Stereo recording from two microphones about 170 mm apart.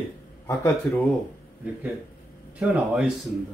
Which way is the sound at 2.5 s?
5° right (ahead or behind).